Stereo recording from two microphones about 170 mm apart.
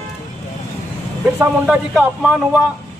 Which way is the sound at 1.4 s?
5° right (ahead or behind).